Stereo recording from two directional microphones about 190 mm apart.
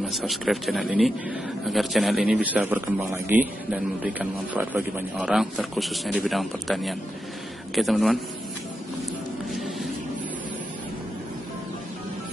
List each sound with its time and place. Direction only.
0.0 s a man's voice: centre (ahead or behind)
9.5 s music: centre (ahead or behind)